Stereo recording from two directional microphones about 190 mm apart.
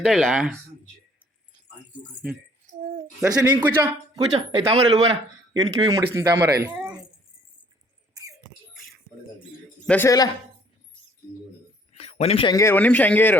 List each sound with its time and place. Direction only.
0.0 s speech: centre (ahead or behind)
2.2 s speech: 5° right (ahead or behind)
4.4 s speech: 30° right (ahead or behind)
5.5 s speech: 20° right (ahead or behind)
8.7 s a sound: centre (ahead or behind)
9.8 s a man's voice: 10° left (ahead or behind)
11.9 s a sound: 30° left (ahead or behind)
12.5 s speech: 10° left (ahead or behind)